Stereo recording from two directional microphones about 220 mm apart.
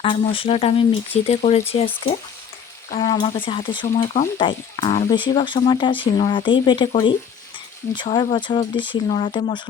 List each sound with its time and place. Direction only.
0.0 s speech: 25° left (ahead or behind)
2.9 s speech: 20° left (ahead or behind)
7.9 s speech: 20° left (ahead or behind)